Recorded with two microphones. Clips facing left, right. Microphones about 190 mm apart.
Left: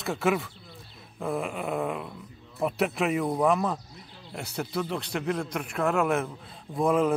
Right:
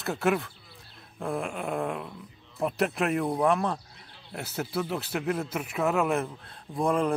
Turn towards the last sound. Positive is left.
turn(degrees=0)  # may be behind; listen again after turning